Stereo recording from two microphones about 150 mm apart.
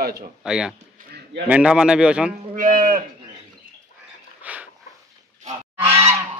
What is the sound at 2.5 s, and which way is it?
Speech, 65° right (ahead or behind).